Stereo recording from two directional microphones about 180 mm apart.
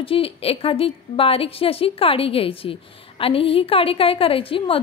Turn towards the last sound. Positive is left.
turn(degrees=30)  # may be behind; listen again after turning